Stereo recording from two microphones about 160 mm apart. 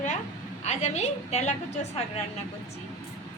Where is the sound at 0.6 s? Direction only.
45° left (ahead or behind).